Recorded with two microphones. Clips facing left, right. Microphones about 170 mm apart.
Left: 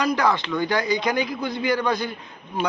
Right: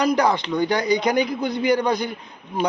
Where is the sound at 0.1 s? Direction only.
20° right (ahead or behind).